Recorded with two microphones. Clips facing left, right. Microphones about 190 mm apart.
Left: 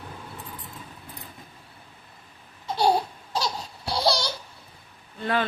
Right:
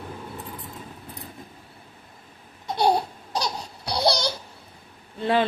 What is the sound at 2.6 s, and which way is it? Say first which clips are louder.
Babbling: right 1 dB; 20° right (ahead or behind).